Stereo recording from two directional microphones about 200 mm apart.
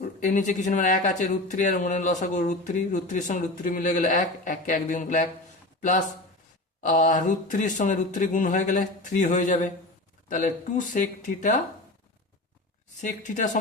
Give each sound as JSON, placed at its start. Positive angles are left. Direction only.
{"t": 0.0, "sound": "a man's voice", "side_deg": 40}
{"t": 6.8, "sound": "a man's voice", "side_deg": 40}
{"t": 13.0, "sound": "a man's voice", "side_deg": 40}